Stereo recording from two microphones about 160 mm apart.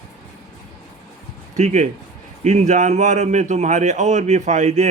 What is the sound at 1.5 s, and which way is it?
A man's voice, 45° right (ahead or behind).